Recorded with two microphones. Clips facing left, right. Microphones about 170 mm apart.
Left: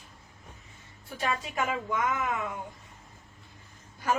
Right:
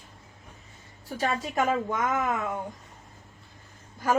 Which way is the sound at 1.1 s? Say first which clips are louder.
Right 3 dB; 40° right (ahead or behind).